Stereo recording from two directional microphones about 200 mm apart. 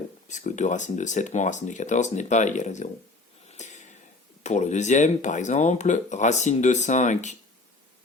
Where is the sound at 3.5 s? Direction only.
35° left (ahead or behind).